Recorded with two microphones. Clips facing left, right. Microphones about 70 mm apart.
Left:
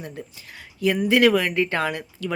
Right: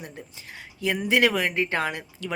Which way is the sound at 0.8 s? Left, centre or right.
Right.